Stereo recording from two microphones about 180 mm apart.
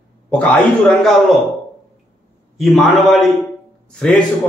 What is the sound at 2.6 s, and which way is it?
A man's voice, centre (ahead or behind).